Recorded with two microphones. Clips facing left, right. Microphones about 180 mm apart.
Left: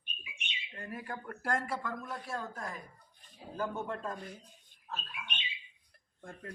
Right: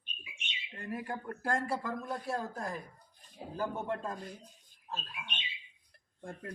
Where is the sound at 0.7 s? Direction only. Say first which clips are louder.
Right 4 dB; 30° right (ahead or behind).